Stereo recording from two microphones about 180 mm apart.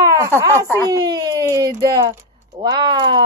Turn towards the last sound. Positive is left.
turn(degrees=-25)  # may be behind; listen again after turning